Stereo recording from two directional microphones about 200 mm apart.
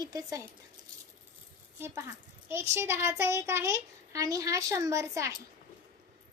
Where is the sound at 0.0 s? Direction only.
20° right (ahead or behind).